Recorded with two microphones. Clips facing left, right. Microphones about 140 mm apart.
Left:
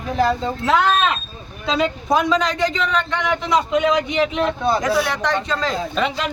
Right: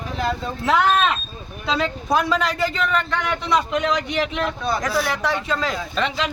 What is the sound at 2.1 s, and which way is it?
A man's voice, centre (ahead or behind).